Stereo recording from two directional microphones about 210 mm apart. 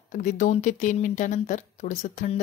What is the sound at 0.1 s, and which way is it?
Speech, 35° left (ahead or behind).